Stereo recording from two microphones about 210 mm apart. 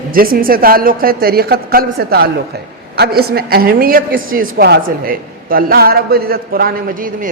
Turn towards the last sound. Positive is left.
turn(degrees=-40)  # may be behind; listen again after turning